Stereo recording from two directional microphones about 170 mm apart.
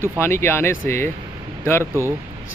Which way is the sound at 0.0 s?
15° left (ahead or behind).